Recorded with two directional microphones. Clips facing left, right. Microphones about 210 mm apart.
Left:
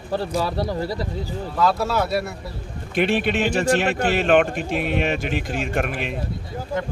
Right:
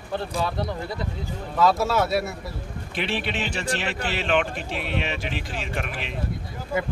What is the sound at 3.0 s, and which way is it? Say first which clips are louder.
Speech: left 8 dB; 50° left (ahead or behind).